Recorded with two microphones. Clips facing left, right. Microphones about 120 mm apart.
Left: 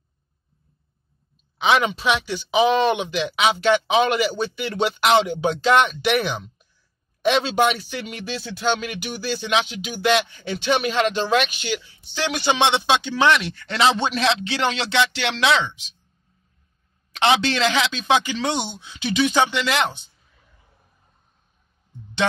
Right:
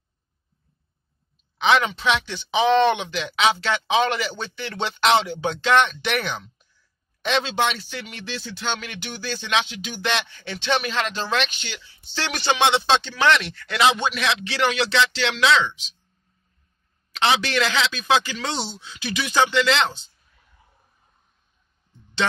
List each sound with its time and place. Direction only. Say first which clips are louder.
2.0 s speech: left 1 dB; 10° left (ahead or behind)
13.7 s speech: even; 30° left (ahead or behind)
17.2 s speech: left 2 dB; 25° left (ahead or behind)